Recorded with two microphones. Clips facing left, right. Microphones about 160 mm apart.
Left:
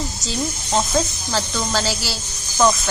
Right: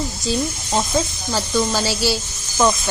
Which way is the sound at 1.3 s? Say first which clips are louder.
Right 5 dB; 15° right (ahead or behind).